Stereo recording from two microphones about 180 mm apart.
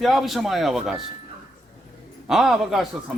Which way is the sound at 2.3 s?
Centre (ahead or behind).